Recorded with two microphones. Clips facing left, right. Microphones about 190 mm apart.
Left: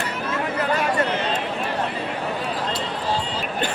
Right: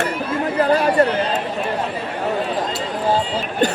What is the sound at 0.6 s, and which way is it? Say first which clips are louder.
Chatter: right 8 dB; 35° right (ahead or behind).